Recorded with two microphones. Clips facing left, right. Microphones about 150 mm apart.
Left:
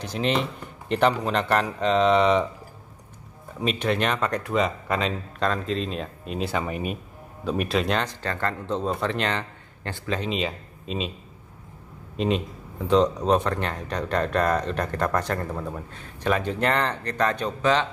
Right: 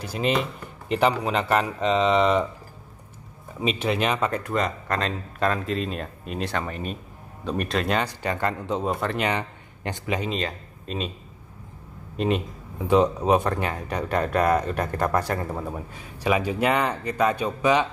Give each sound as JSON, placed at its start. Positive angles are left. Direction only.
{"t": 0.0, "sound": "speech", "side_deg": -5}
{"t": 3.5, "sound": "speech", "side_deg": 0}
{"t": 10.3, "sound": "speech", "side_deg": 0}
{"t": 12.2, "sound": "speech", "side_deg": 0}